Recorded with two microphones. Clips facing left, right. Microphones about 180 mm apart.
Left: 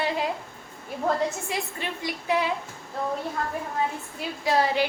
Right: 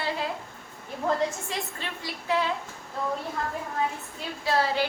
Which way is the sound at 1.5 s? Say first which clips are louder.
Left 3 dB; 15° left (ahead or behind).